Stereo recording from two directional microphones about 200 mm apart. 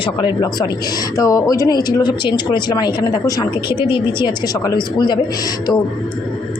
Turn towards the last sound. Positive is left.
turn(degrees=20)  # may be behind; listen again after turning